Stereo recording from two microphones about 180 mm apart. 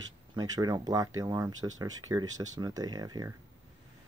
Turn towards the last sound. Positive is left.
turn(degrees=-20)  # may be behind; listen again after turning